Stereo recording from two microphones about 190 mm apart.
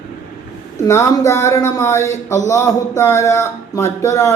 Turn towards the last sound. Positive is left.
turn(degrees=15)  # may be behind; listen again after turning